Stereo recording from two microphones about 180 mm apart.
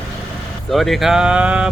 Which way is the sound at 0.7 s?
Centre (ahead or behind).